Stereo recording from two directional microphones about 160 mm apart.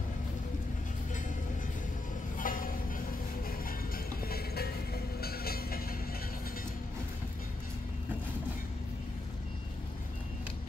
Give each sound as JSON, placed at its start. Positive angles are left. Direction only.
{"t": 2.3, "sound": "music", "side_deg": 60}